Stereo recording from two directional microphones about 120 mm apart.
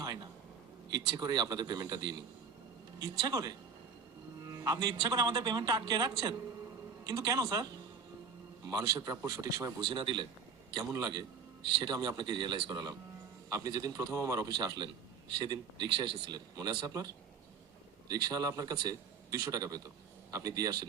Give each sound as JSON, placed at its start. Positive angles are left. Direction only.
{"t": 0.0, "sound": "a sound", "side_deg": -35}
{"t": 0.9, "sound": "a man's voice", "side_deg": -35}
{"t": 9.8, "sound": "a man's voice", "side_deg": -45}
{"t": 10.8, "sound": "a man's voice", "side_deg": -30}
{"t": 18.1, "sound": "a man's voice", "side_deg": -30}